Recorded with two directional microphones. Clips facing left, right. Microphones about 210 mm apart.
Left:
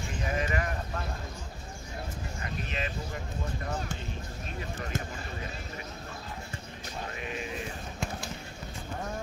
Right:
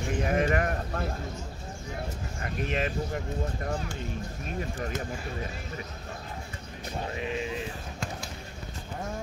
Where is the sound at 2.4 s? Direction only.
50° right (ahead or behind).